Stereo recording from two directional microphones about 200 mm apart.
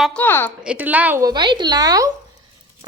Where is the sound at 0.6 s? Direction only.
5° right (ahead or behind).